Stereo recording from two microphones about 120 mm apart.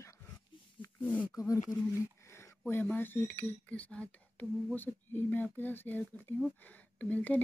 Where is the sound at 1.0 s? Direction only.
15° left (ahead or behind).